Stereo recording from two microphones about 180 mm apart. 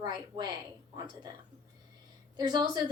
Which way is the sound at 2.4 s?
25° right (ahead or behind).